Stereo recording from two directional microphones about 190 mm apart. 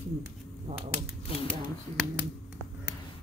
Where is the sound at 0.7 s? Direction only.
35° right (ahead or behind).